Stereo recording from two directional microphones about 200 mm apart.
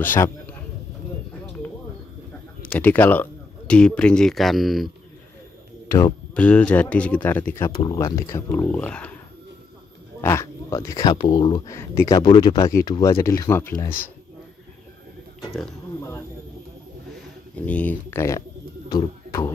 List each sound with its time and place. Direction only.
0.0 s speech: 10° left (ahead or behind)
2.6 s speech: 10° left (ahead or behind)
5.9 s speech: 15° left (ahead or behind)
10.2 s speech: 15° left (ahead or behind)
17.6 s speech: 5° left (ahead or behind)